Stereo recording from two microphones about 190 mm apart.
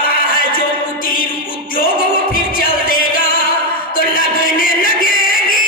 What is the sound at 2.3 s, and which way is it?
Music, 45° left (ahead or behind).